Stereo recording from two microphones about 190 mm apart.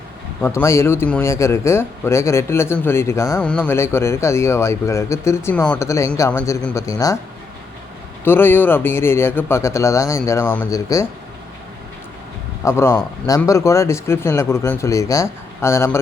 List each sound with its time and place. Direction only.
0.4 s speech: 15° left (ahead or behind)
8.2 s speech: 10° left (ahead or behind)
12.6 s speech: 15° left (ahead or behind)